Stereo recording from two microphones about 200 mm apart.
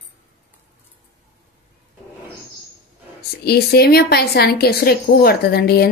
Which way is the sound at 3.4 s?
50° left (ahead or behind).